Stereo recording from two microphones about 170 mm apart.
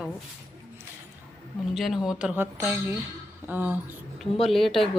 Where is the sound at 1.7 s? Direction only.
Centre (ahead or behind).